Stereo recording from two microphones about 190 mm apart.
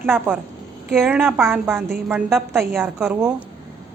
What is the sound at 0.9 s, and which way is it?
A woman's voice, centre (ahead or behind).